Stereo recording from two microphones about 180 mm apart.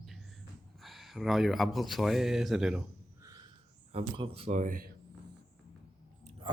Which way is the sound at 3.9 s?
35° right (ahead or behind).